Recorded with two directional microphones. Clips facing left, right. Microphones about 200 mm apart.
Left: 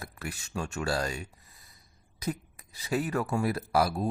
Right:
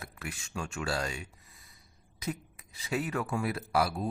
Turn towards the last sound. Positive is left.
turn(degrees=40)  # may be behind; listen again after turning